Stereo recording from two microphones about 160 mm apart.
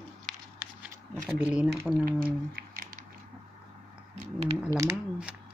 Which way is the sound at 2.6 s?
60° right (ahead or behind).